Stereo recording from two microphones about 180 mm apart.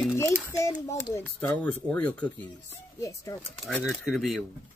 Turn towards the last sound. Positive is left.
turn(degrees=0)  # may be behind; listen again after turning